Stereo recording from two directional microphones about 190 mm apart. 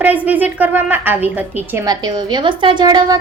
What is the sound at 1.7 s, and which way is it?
A woman's voice, 20° right (ahead or behind).